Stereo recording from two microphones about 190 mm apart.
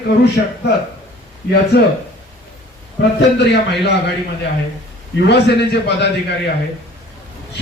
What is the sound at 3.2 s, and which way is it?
Speech, 65° left (ahead or behind).